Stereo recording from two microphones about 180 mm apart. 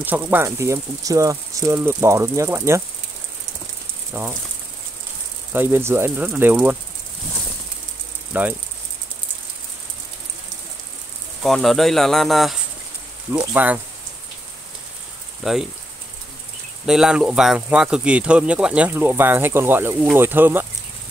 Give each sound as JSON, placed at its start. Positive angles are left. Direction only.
{"t": 0.0, "sound": "speech", "side_deg": -10}
{"t": 4.1, "sound": "speech", "side_deg": -10}
{"t": 5.5, "sound": "speech", "side_deg": -10}
{"t": 8.3, "sound": "speech", "side_deg": -10}
{"t": 11.4, "sound": "speech", "side_deg": 0}
{"t": 15.4, "sound": "speech", "side_deg": 0}
{"t": 16.8, "sound": "speech", "side_deg": -5}